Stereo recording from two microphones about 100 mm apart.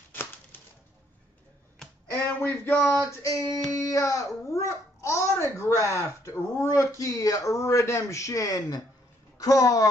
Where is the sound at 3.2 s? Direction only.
35° left (ahead or behind).